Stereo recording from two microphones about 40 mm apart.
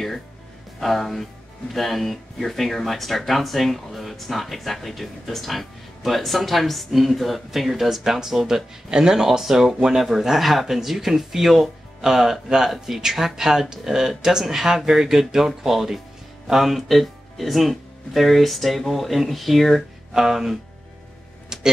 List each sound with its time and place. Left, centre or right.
0.7 s speech: centre
8.9 s speech: centre
20.2 s speech: centre
21.5 s music: centre